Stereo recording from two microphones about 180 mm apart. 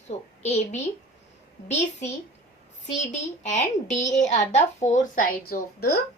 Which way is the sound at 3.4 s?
40° left (ahead or behind).